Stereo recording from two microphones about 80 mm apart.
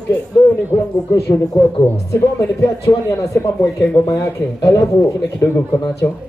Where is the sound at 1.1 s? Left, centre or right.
Left.